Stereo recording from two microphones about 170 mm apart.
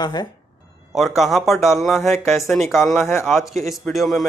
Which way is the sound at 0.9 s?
Centre (ahead or behind).